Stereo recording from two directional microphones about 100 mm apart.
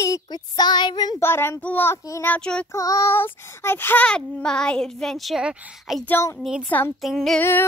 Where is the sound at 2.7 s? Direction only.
35° left (ahead or behind); by 6.1 s 5° right (ahead or behind).